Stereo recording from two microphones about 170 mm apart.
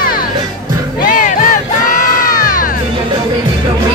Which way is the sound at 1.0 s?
50° left (ahead or behind).